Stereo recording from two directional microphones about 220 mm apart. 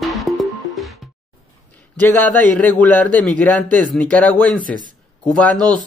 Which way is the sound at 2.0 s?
5° left (ahead or behind).